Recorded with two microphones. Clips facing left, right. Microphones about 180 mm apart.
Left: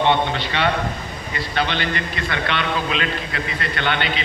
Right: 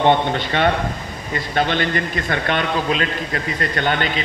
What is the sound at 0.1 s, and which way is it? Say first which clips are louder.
A man's voice: right 3 dB; 45° right (ahead or behind).